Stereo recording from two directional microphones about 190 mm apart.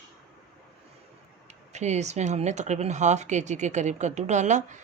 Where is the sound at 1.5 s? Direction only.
35° right (ahead or behind).